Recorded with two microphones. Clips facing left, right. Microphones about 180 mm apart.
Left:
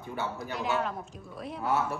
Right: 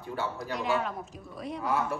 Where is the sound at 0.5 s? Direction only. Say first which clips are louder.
Right 1 dB; centre (ahead or behind).